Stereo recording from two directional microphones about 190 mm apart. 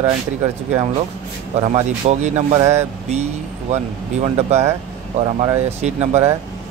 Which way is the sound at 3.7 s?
35° right (ahead or behind).